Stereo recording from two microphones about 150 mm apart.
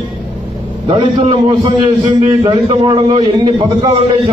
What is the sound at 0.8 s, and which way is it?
A man's voice, 35° right (ahead or behind).